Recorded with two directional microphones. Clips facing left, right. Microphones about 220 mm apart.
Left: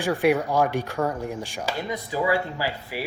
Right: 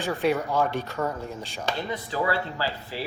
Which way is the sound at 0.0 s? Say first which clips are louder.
Left 4 dB; 10° left (ahead or behind).